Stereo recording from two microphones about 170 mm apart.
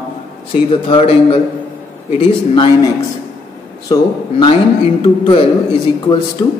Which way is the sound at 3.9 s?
30° left (ahead or behind).